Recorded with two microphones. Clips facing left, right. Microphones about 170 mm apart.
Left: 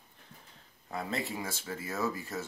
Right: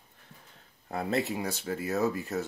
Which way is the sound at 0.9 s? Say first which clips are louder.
Right 6 dB; 60° right (ahead or behind).